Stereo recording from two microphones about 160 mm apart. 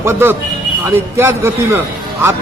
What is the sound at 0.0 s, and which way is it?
A man's voice, 15° right (ahead or behind).